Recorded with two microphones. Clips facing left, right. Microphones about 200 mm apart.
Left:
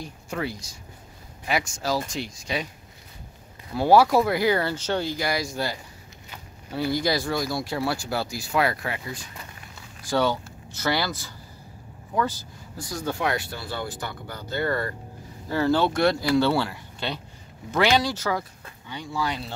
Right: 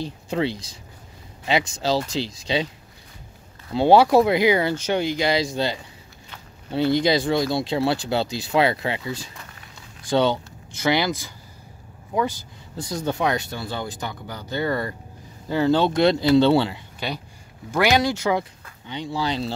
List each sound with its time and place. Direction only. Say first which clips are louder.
0.0 s speech: right 6 dB; 30° right (ahead or behind)
3.7 s speech: right 3 dB; 25° right (ahead or behind)
12.7 s speech: right 4 dB; 20° right (ahead or behind)